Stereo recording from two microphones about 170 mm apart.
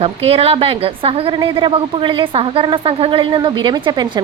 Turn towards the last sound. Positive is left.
turn(degrees=-25)  # may be behind; listen again after turning